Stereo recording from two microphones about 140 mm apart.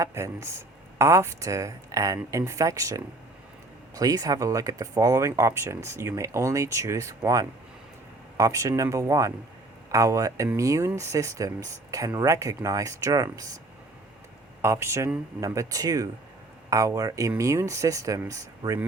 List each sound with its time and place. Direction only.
0.0 s speech: 20° right (ahead or behind)
14.6 s speech: 20° right (ahead or behind)